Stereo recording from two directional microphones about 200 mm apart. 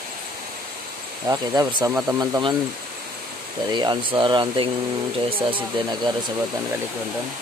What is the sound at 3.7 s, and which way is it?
Speech, 20° right (ahead or behind).